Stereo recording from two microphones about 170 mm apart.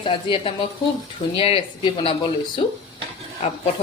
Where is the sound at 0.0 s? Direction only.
30° left (ahead or behind).